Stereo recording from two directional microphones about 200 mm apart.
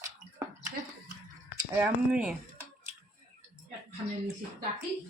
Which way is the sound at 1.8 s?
5° right (ahead or behind).